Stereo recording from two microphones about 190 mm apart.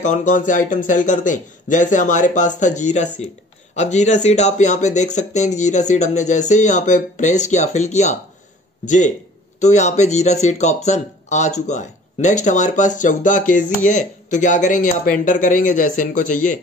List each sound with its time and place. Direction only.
0.0 s speech: 40° left (ahead or behind)